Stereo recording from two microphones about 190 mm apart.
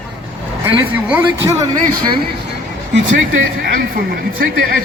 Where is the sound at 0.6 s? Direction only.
10° right (ahead or behind).